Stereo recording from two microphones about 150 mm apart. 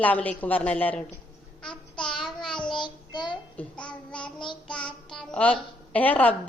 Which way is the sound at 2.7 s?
30° left (ahead or behind).